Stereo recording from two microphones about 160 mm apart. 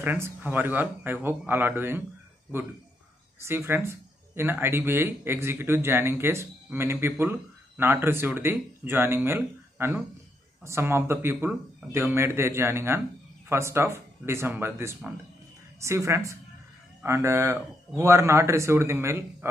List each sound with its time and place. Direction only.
0.0 s speech: 10° right (ahead or behind)
3.3 s a woman's voice: 15° right (ahead or behind)